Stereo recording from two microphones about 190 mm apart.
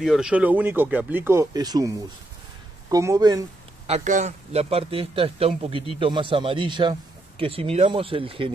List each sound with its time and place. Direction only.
0.0 s speech: 5° right (ahead or behind); by 1.9 s 20° right (ahead or behind)
2.9 s a man's voice: 20° right (ahead or behind)
3.8 s a man's voice: 35° right (ahead or behind)